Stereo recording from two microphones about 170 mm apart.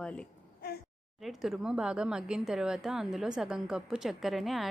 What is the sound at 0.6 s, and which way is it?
Speech, 65° left (ahead or behind).